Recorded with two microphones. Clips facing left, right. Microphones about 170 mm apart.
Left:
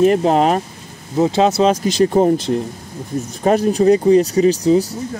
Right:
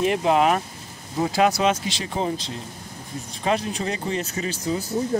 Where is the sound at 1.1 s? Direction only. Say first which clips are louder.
Left 6 dB; 25° left (ahead or behind); by 2.6 s 50° left (ahead or behind).